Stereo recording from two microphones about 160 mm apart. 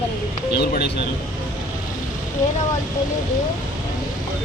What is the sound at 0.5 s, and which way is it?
Speech, 85° left.